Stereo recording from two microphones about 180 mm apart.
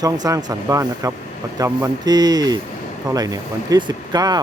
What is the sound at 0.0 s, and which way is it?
Speech, 20° right (ahead or behind).